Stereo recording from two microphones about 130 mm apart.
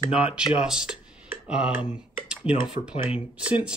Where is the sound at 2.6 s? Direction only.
5° right (ahead or behind).